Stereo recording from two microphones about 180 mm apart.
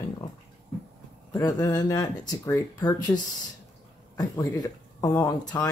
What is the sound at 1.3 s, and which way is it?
Speech, 20° left (ahead or behind).